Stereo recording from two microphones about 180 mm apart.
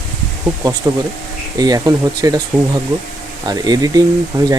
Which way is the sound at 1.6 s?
20° right (ahead or behind).